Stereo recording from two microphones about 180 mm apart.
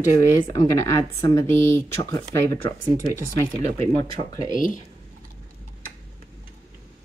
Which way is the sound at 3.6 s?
40° right (ahead or behind).